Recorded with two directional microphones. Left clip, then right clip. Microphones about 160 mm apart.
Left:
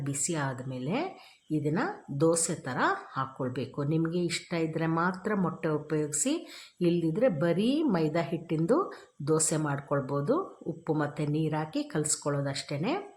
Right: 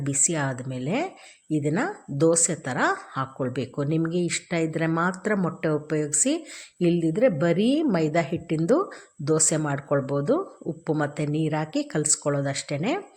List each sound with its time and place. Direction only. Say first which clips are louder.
0.0 s speech: right 7 dB; 20° right (ahead or behind)